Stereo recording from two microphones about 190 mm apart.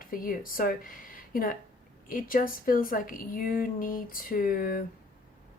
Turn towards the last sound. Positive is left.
turn(degrees=50)  # may be behind; listen again after turning